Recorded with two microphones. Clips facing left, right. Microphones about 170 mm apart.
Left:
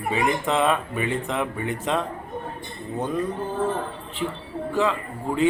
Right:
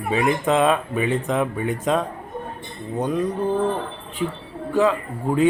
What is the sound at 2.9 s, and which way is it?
Speech, 15° right (ahead or behind).